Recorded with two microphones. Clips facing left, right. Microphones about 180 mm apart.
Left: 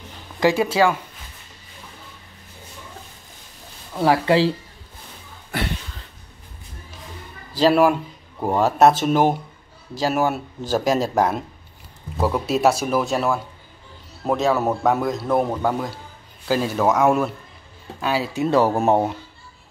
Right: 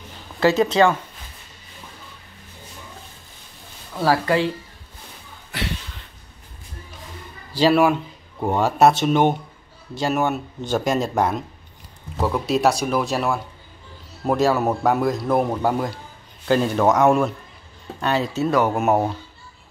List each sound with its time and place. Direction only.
0.4 s speech: 10° left (ahead or behind)
4.0 s speech: 25° left (ahead or behind)
7.5 s a man's voice: centre (ahead or behind)
18.5 s speech: 30° left (ahead or behind)